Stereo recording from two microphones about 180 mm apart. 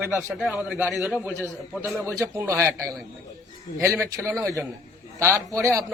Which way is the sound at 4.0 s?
15° right (ahead or behind).